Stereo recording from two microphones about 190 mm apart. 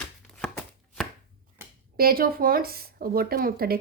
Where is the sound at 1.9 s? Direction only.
50° right (ahead or behind).